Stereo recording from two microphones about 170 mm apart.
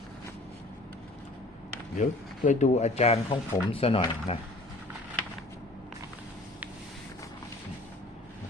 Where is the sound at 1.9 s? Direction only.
50° left (ahead or behind).